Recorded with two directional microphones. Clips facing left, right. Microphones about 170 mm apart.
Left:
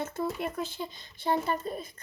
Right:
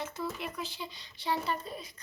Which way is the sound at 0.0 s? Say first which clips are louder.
Left 5 dB; 50° left (ahead or behind).